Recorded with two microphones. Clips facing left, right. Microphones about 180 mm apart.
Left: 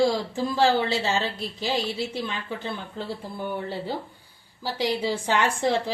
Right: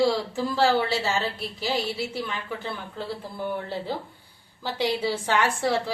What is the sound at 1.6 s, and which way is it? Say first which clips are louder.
Speech: left 1 dB; 20° left (ahead or behind).